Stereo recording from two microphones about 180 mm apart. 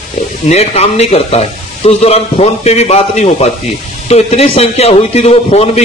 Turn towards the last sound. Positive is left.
turn(degrees=35)  # may be behind; listen again after turning